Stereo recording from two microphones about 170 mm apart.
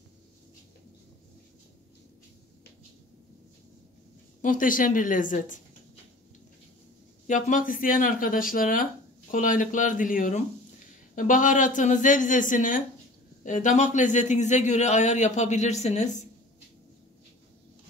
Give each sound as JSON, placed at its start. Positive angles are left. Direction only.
{"t": 4.4, "sound": "a man's voice", "side_deg": 50}
{"t": 7.2, "sound": "a man's voice", "side_deg": 50}